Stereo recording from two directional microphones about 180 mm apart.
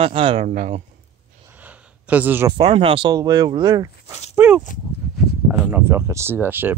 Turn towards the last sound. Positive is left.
turn(degrees=-10)  # may be behind; listen again after turning